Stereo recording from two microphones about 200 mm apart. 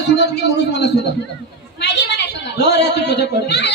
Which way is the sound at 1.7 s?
60° left (ahead or behind).